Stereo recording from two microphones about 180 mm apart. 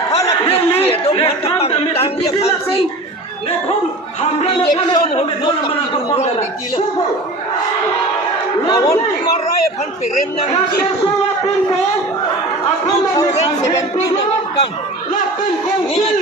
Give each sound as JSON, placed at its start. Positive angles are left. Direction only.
{"t": 0.8, "sound": "chatter", "side_deg": 30}
{"t": 4.2, "sound": "a man's voice", "side_deg": 35}
{"t": 8.7, "sound": "speech", "side_deg": 20}